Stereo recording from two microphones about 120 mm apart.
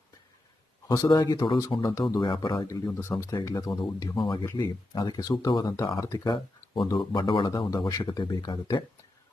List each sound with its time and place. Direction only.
0.9 s speech: 30° left (ahead or behind)
2.2 s speech: 45° left (ahead or behind)
2.6 s speech: 25° left (ahead or behind)
5.7 s speech: 25° left (ahead or behind)